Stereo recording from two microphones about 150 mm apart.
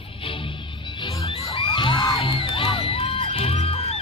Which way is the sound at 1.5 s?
35° left (ahead or behind).